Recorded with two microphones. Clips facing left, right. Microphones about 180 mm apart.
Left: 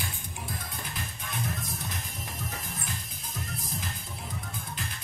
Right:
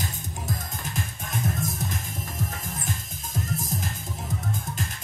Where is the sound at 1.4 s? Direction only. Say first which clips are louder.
Right 9 dB; 45° right (ahead or behind).